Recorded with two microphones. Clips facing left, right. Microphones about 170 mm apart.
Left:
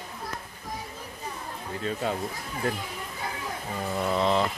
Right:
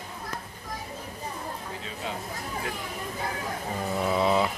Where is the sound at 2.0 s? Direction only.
45° left (ahead or behind).